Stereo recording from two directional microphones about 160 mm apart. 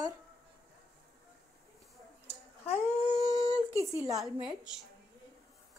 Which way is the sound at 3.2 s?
25° right (ahead or behind).